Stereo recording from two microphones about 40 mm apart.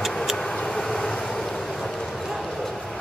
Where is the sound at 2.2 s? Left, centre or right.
Centre.